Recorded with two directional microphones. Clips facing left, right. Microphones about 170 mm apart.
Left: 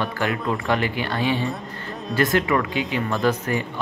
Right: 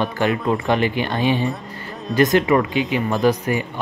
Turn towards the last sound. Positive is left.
turn(degrees=-15)  # may be behind; listen again after turning